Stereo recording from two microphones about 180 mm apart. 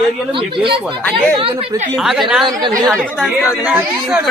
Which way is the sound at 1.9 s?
Centre (ahead or behind).